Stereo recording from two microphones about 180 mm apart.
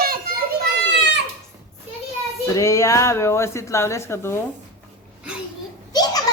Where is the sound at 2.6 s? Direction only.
15° left (ahead or behind).